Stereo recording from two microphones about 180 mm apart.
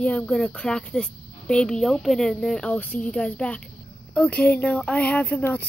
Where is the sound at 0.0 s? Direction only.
5° left (ahead or behind).